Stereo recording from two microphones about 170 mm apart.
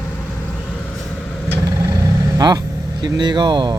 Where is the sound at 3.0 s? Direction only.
25° right (ahead or behind).